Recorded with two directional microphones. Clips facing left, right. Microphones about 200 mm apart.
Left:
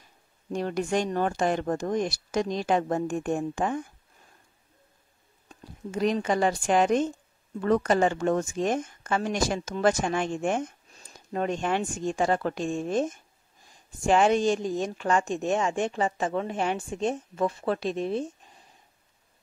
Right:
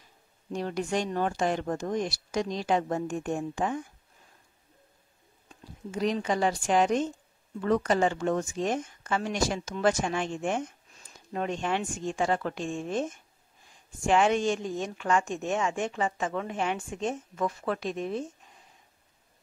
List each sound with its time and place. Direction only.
0.5 s a woman's voice: 50° left (ahead or behind)
5.9 s a woman's voice: 55° left (ahead or behind); by 18.2 s 30° left (ahead or behind)